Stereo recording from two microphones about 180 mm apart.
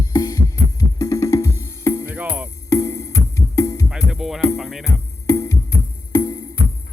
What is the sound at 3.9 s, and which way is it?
Music, 5° right (ahead or behind).